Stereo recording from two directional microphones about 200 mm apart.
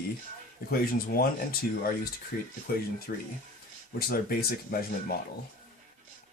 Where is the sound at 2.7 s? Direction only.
50° left (ahead or behind).